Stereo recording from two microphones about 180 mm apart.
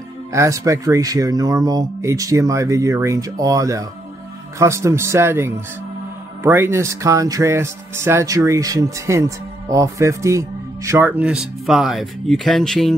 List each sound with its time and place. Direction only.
0.3 s speech: 15° right (ahead or behind); by 12.9 s centre (ahead or behind)